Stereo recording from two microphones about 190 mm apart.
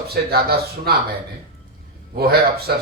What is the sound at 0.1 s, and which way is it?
Speech, 55° right (ahead or behind).